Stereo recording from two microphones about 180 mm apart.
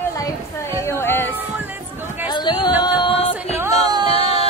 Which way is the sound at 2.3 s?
25° left (ahead or behind).